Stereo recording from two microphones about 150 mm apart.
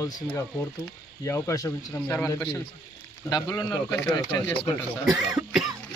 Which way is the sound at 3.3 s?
25° left (ahead or behind).